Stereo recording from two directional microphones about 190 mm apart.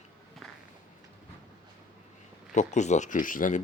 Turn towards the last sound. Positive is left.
turn(degrees=45)  # may be behind; listen again after turning